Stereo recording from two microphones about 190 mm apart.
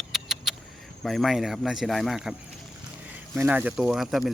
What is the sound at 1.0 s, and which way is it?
Speech, centre (ahead or behind).